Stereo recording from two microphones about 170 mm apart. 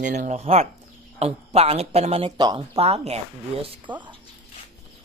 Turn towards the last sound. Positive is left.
turn(degrees=-35)  # may be behind; listen again after turning